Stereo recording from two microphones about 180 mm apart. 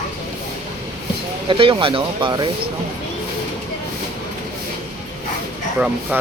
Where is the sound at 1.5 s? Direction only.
30° right (ahead or behind).